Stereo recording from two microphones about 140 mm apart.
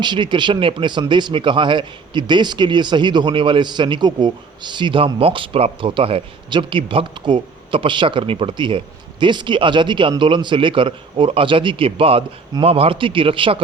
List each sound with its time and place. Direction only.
0.0 s speech: 35° right (ahead or behind)